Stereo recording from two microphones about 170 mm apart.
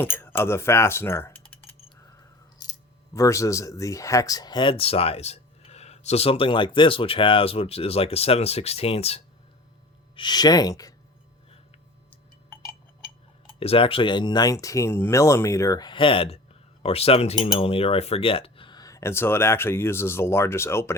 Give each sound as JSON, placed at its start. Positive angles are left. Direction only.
{"t": 0.0, "sound": "speech", "side_deg": 15}
{"t": 3.2, "sound": "speech", "side_deg": 20}
{"t": 10.2, "sound": "speech", "side_deg": 25}
{"t": 13.5, "sound": "speech", "side_deg": 35}